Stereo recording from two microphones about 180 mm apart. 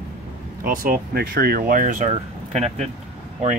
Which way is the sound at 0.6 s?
50° right (ahead or behind).